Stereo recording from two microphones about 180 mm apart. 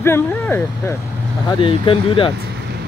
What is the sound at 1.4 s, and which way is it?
Speech, 30° left (ahead or behind).